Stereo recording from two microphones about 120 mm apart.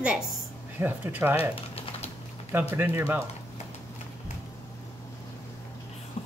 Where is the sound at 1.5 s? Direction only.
55° left (ahead or behind).